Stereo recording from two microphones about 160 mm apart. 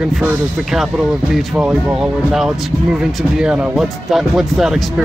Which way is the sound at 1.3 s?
5° right (ahead or behind).